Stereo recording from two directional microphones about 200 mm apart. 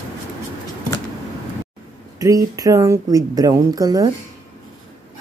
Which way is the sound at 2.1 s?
15° right (ahead or behind).